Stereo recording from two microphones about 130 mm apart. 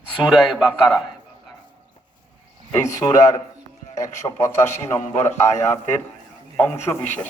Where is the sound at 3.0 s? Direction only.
15° left (ahead or behind).